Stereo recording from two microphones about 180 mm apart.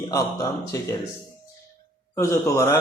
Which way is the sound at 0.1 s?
15° left (ahead or behind).